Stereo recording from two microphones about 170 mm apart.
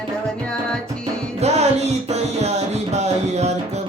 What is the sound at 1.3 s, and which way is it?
Music, 40° right (ahead or behind).